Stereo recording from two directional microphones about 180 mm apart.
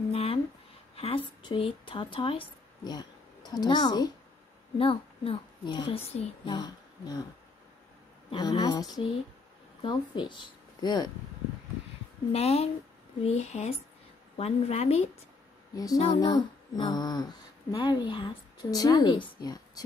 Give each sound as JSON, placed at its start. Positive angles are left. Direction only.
{"t": 0.1, "sound": "a sound", "side_deg": 35}
{"t": 0.9, "sound": "speech", "side_deg": 30}
{"t": 6.5, "sound": "speech", "side_deg": 25}
{"t": 8.3, "sound": "speech", "side_deg": 25}
{"t": 12.3, "sound": "speech", "side_deg": 35}
{"t": 15.7, "sound": "speech", "side_deg": 20}